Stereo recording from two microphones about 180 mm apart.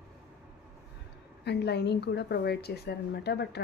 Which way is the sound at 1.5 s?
70° left (ahead or behind).